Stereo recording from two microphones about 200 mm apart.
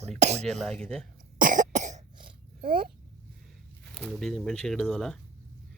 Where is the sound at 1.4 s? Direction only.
40° right (ahead or behind).